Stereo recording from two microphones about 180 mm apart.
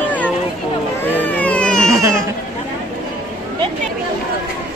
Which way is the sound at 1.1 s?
10° left (ahead or behind).